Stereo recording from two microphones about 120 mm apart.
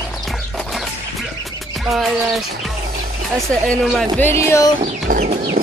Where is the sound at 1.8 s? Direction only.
Centre (ahead or behind).